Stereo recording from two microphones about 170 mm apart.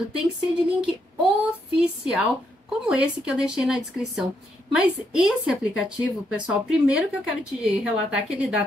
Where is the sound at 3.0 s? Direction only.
5° right (ahead or behind).